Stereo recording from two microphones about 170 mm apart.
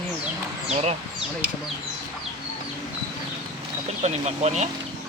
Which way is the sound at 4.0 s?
40° right (ahead or behind).